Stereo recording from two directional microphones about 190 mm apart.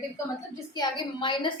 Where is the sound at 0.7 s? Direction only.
25° left (ahead or behind).